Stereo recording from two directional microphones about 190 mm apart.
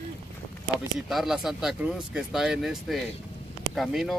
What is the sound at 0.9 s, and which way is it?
Speech, centre (ahead or behind).